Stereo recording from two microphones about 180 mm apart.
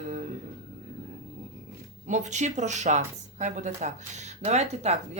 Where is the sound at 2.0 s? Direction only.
40° right (ahead or behind).